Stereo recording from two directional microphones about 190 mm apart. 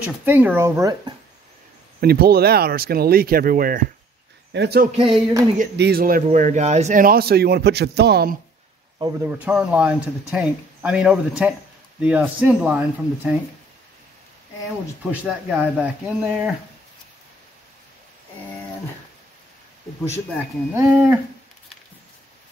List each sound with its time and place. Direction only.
0.2 s speech: 10° right (ahead or behind)
2.0 s a man's voice: 55° right (ahead or behind)
4.5 s a man's voice: 60° right (ahead or behind)
4.9 s music: 25° right (ahead or behind)
5.8 s a man's voice: 55° right (ahead or behind)
6.2 s a man's voice: 40° right (ahead or behind); by 8.4 s 55° right (ahead or behind)
8.9 s speech: 15° right (ahead or behind)
15.0 s speech: 5° right (ahead or behind)
20.7 s speech: 15° right (ahead or behind)